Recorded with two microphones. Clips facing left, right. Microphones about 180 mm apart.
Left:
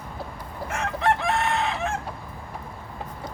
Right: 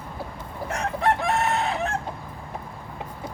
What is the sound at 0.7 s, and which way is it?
Chicken, 35° right (ahead or behind).